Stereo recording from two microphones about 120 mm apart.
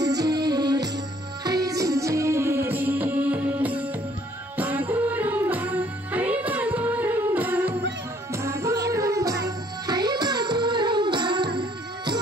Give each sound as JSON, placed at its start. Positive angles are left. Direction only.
{"t": 0.0, "sound": "music", "side_deg": -30}